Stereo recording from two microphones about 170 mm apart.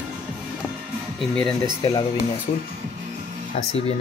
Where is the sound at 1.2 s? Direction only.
5° left (ahead or behind).